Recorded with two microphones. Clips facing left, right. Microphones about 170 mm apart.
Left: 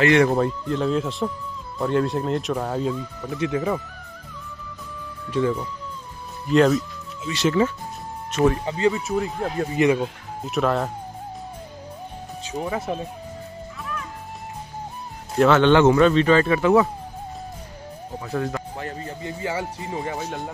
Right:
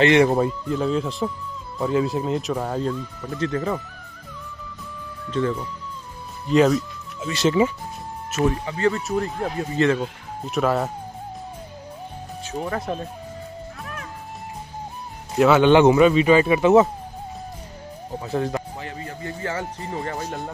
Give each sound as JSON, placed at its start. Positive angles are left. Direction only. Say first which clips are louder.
{"t": 0.0, "sound": "speech", "louder": "right 1 dB", "side_deg": -20}
{"t": 0.5, "sound": "speech", "louder": "even", "side_deg": -5}
{"t": 5.3, "sound": "speech", "louder": "left 1 dB", "side_deg": 10}
{"t": 6.5, "sound": "speech", "louder": "even", "side_deg": 0}
{"t": 7.6, "sound": "speech", "louder": "right 1 dB", "side_deg": -10}
{"t": 8.6, "sound": "speech", "louder": "left 1 dB", "side_deg": 20}
{"t": 8.9, "sound": "speech", "louder": "even", "side_deg": 0}
{"t": 9.8, "sound": "speech", "louder": "left 1 dB", "side_deg": 15}
{"t": 10.4, "sound": "speech", "louder": "right 1 dB", "side_deg": 0}
{"t": 12.4, "sound": "speech", "louder": "even", "side_deg": 5}
{"t": 15.3, "sound": "speech", "louder": "right 1 dB", "side_deg": -5}
{"t": 18.2, "sound": "speech", "louder": "right 2 dB", "side_deg": -25}
{"t": 19.4, "sound": "speech", "louder": "left 1 dB", "side_deg": 10}